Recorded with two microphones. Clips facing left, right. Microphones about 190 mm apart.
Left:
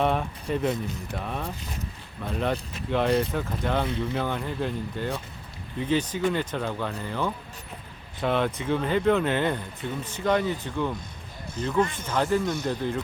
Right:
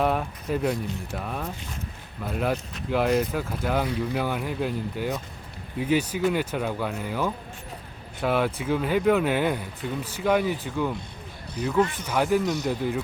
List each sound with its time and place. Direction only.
0.0 s speech: 5° right (ahead or behind)